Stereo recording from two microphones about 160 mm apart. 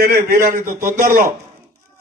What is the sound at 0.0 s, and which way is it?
A man's voice, 70° right (ahead or behind).